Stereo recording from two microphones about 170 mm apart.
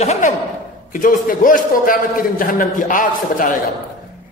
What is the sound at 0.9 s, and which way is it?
A man's voice, 50° left (ahead or behind).